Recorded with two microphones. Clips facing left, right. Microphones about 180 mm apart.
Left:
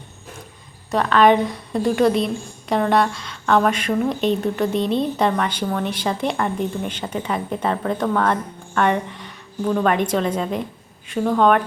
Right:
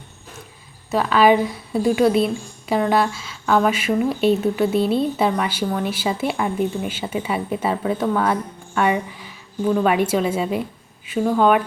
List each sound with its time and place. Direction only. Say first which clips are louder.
0.9 s a woman's voice: even; 5° right (ahead or behind)